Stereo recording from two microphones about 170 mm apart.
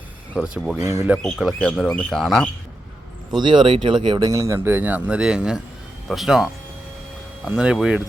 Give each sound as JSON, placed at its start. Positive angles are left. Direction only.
{"t": 0.3, "sound": "speech", "side_deg": 0}
{"t": 0.8, "sound": "speech", "side_deg": -15}
{"t": 1.1, "sound": "speech", "side_deg": 0}
{"t": 3.4, "sound": "speech", "side_deg": -30}